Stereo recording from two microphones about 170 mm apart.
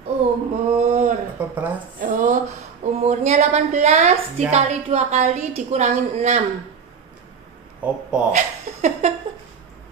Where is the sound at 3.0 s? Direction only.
40° right (ahead or behind).